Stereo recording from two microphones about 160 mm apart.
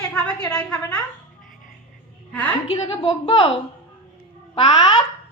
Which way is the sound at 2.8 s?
40° left (ahead or behind).